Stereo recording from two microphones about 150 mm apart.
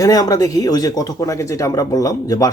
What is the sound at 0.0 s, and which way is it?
Speech, 25° left (ahead or behind).